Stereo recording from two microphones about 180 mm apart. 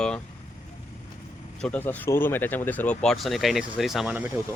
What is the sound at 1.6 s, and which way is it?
Speech, 10° left (ahead or behind).